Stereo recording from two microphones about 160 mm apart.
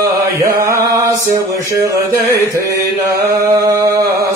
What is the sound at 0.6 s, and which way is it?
Mantra, 20° right (ahead or behind).